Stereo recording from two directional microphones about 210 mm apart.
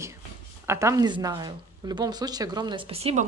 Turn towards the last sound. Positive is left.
turn(degrees=-30)  # may be behind; listen again after turning